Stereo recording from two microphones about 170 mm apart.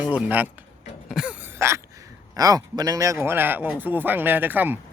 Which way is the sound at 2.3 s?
20° right (ahead or behind).